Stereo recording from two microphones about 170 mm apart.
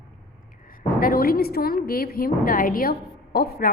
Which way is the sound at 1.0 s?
60° left (ahead or behind).